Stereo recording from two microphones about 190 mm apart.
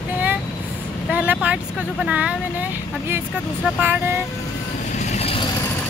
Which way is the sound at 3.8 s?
10° right (ahead or behind).